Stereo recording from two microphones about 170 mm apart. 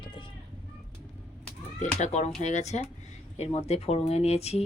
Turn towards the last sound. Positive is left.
turn(degrees=40)  # may be behind; listen again after turning